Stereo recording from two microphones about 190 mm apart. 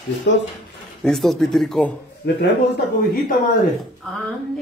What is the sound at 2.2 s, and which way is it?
Speech, 60° left (ahead or behind).